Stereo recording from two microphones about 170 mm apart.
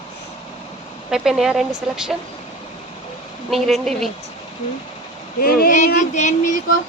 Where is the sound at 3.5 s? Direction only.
Centre (ahead or behind).